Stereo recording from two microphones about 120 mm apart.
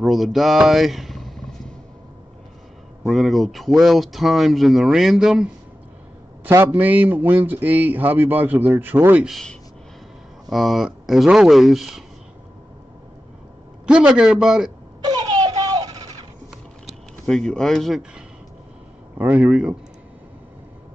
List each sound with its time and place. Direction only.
0.0 s speech: centre (ahead or behind)
3.1 s speech: centre (ahead or behind)
6.4 s a man's voice: 20° right (ahead or behind)
9.3 s speech: 5° left (ahead or behind)
13.8 s speech: 10° right (ahead or behind)
15.0 s a sound: 35° right (ahead or behind)
17.3 s speech: 5° left (ahead or behind)
19.1 s a man's voice: 15° right (ahead or behind)